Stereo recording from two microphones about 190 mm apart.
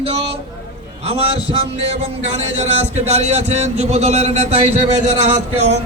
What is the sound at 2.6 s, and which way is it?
A man's voice, 35° right (ahead or behind).